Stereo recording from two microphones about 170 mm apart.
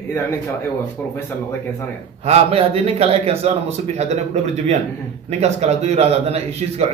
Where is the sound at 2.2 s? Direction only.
40° right (ahead or behind).